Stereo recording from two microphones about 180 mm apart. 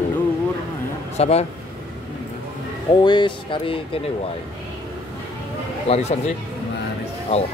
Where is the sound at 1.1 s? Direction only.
35° left (ahead or behind).